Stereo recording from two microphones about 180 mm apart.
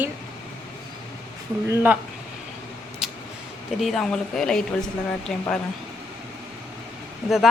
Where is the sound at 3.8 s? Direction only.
Centre (ahead or behind).